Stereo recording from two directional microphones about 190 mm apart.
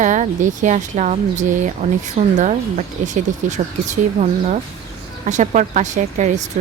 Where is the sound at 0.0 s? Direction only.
40° right (ahead or behind).